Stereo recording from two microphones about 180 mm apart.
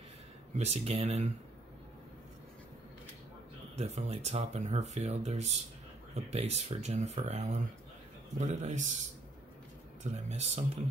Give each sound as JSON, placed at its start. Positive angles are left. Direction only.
{"t": 0.6, "sound": "speech", "side_deg": -35}
{"t": 3.7, "sound": "speech", "side_deg": -40}
{"t": 10.0, "sound": "speech", "side_deg": -40}